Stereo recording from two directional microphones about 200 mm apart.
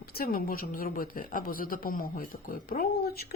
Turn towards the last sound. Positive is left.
turn(degrees=50)  # may be behind; listen again after turning